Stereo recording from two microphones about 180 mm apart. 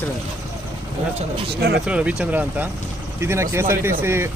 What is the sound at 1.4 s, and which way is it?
Speech, 65° right (ahead or behind).